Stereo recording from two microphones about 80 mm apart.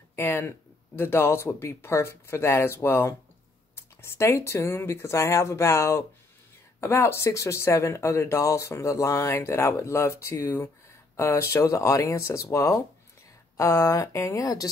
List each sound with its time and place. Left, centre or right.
0.1 s speech: left